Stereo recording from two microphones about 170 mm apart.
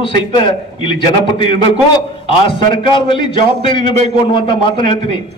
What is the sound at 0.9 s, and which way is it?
A man's voice, 30° left (ahead or behind).